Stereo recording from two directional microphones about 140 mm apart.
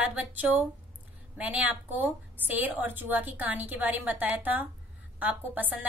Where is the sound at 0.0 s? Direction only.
10° right (ahead or behind).